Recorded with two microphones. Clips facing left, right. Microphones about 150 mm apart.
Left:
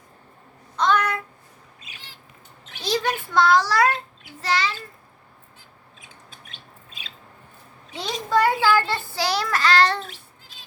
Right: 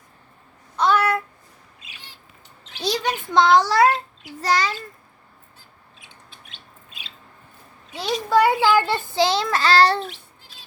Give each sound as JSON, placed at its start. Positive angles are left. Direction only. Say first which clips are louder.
{"t": 0.8, "sound": "a sound", "louder": "right 2 dB", "side_deg": -5}
{"t": 2.9, "sound": "a child's voice", "louder": "right 1 dB", "side_deg": -15}
{"t": 4.4, "sound": "a child's voice", "louder": "right 3 dB", "side_deg": -40}
{"t": 6.3, "sound": "bird", "louder": "left 1 dB", "side_deg": 40}
{"t": 7.9, "sound": "a child's voice", "louder": "right 3 dB", "side_deg": -15}